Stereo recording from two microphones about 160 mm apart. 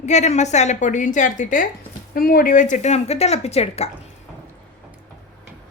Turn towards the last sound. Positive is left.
turn(degrees=40)  # may be behind; listen again after turning